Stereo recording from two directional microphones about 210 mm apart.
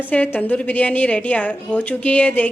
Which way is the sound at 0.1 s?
5° left (ahead or behind).